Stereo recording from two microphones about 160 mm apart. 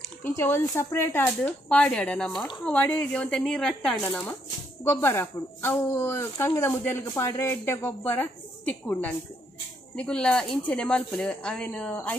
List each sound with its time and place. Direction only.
0.3 s speech: 15° left (ahead or behind)